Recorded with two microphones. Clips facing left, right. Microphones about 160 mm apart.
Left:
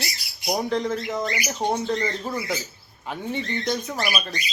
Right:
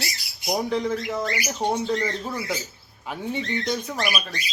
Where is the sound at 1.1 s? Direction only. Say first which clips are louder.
Even; 20° left (ahead or behind).